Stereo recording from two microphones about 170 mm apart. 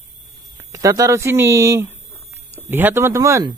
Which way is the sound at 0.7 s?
20° right (ahead or behind).